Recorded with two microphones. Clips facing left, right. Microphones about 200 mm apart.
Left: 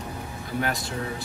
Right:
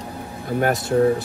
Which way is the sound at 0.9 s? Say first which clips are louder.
Right 15 dB; 45° right (ahead or behind).